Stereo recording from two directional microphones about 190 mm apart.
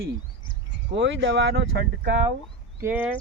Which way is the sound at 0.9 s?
70° right (ahead or behind).